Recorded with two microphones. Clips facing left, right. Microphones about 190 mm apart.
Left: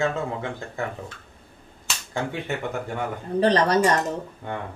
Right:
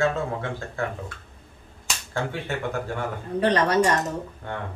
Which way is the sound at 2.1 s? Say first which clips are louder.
Left 1 dB; 15° left (ahead or behind).